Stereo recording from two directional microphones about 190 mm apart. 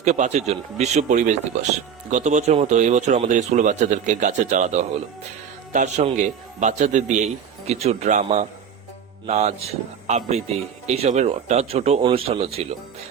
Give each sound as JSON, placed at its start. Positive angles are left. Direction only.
{"t": 0.0, "sound": "speech", "side_deg": -35}